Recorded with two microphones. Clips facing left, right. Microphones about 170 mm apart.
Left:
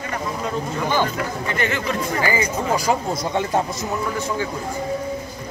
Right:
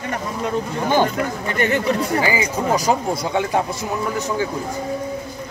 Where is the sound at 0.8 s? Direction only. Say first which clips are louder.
Right 4 dB; 50° right (ahead or behind).